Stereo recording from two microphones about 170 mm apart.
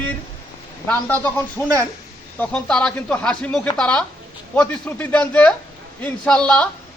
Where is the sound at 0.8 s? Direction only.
10° left (ahead or behind).